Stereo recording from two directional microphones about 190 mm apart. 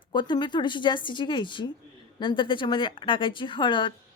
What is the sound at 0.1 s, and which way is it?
Speech, 25° left (ahead or behind).